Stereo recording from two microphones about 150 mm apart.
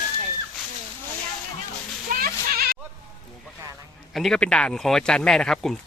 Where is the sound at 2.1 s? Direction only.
85° right.